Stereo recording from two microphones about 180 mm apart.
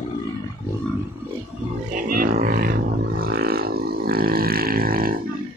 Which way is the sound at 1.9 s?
50° right (ahead or behind).